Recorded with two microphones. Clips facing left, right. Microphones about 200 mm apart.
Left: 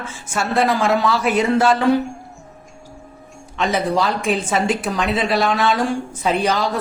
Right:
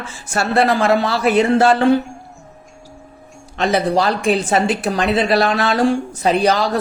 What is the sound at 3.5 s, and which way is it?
Speech, 35° right (ahead or behind).